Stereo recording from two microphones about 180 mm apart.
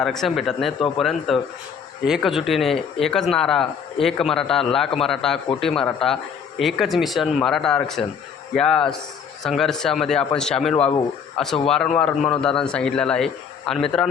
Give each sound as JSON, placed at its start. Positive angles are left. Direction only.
{"t": 0.0, "sound": "a man's voice", "side_deg": 0}
{"t": 10.8, "sound": "a man's voice", "side_deg": 35}
{"t": 11.4, "sound": "a man's voice", "side_deg": 0}